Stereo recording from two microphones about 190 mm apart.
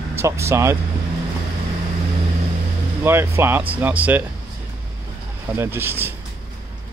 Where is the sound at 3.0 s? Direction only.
10° right (ahead or behind).